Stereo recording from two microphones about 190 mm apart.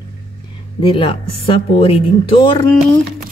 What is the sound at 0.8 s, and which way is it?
Speech, 30° left (ahead or behind).